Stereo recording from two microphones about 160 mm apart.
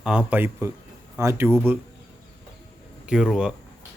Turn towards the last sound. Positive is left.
turn(degrees=0)  # may be behind; listen again after turning